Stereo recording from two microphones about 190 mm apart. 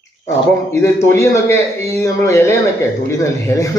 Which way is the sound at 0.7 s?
15° left (ahead or behind).